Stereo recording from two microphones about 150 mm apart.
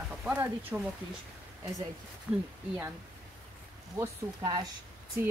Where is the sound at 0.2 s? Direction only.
10° right (ahead or behind).